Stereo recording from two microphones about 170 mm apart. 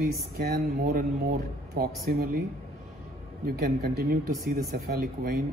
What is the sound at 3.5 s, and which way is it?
Speech, 65° right (ahead or behind).